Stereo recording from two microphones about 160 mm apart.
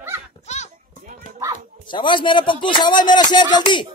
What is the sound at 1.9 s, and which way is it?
A man's voice, 30° left (ahead or behind).